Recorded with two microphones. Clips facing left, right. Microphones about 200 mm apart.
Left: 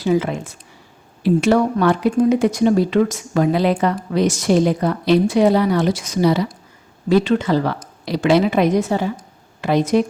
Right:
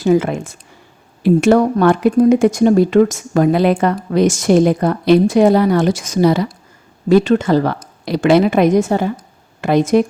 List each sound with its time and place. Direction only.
0.0 s speech: 50° right (ahead or behind)